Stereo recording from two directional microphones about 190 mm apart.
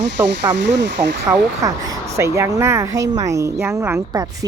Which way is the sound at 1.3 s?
15° right (ahead or behind).